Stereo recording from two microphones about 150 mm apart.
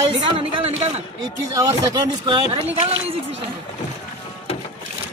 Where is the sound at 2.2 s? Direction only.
35° right (ahead or behind).